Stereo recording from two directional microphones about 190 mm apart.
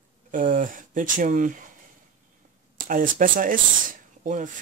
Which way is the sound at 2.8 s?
45° right (ahead or behind).